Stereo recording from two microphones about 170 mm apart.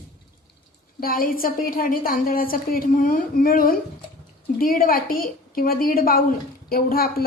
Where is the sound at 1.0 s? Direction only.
60° left (ahead or behind).